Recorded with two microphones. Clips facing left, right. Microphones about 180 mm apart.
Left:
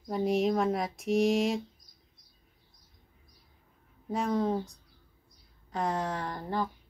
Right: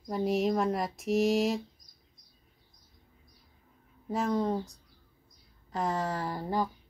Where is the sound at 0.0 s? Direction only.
Centre (ahead or behind).